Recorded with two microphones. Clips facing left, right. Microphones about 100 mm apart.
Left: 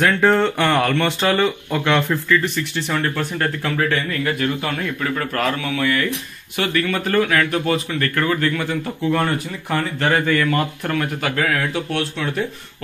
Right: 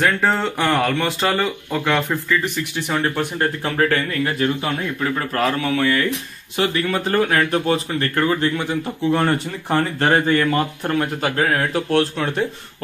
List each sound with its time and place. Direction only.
0.0 s speech: centre (ahead or behind)
2.5 s speech: 15° right (ahead or behind)
3.6 s speech: 45° right (ahead or behind)
5.3 s speech: 35° right (ahead or behind)
9.2 s speech: 40° right (ahead or behind)